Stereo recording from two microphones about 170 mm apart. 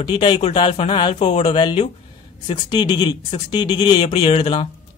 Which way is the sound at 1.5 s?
25° left (ahead or behind).